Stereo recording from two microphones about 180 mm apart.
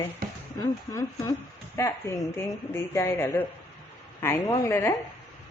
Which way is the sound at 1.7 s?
15° left (ahead or behind).